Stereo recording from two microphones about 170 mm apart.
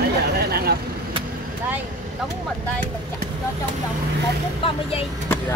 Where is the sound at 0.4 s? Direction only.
65° right (ahead or behind).